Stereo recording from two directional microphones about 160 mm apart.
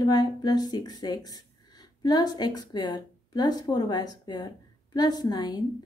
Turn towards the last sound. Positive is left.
turn(degrees=25)  # may be behind; listen again after turning